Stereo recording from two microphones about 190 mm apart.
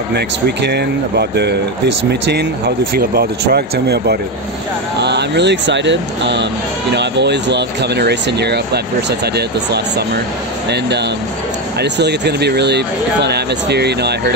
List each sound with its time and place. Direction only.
0.1 s speech: 60° right (ahead or behind)